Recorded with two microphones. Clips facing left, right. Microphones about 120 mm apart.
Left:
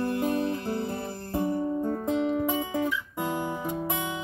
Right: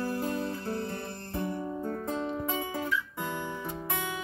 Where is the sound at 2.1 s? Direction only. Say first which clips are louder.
Left 8 dB; 20° left (ahead or behind).